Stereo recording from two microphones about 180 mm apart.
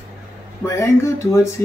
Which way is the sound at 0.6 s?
15° left (ahead or behind).